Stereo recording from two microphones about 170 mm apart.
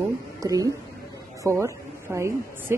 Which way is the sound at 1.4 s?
15° right (ahead or behind).